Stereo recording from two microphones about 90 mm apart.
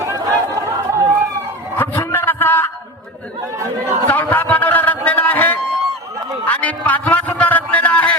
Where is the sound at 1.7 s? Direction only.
25° left (ahead or behind).